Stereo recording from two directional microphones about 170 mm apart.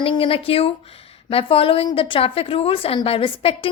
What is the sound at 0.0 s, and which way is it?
Speech, 30° left (ahead or behind).